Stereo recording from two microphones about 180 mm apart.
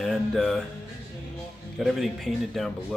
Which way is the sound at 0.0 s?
Centre (ahead or behind).